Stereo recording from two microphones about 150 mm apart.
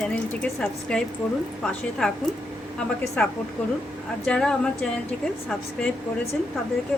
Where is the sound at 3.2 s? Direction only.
10° left (ahead or behind).